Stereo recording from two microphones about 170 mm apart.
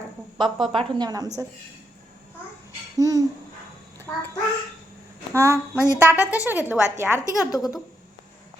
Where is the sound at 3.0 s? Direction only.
20° right (ahead or behind).